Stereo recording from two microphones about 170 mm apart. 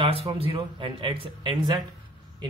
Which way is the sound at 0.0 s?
30° right (ahead or behind).